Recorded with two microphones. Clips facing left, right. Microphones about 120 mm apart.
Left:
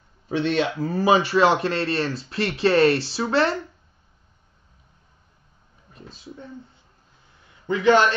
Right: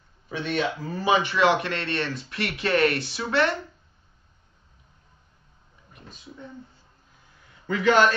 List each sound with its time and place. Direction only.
0.4 s a man's voice: 30° left (ahead or behind)
5.9 s a sound: 30° left (ahead or behind)
7.6 s a man's voice: 20° left (ahead or behind)